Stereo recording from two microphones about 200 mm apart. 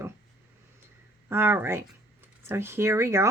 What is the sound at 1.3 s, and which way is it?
Speech, 10° right (ahead or behind).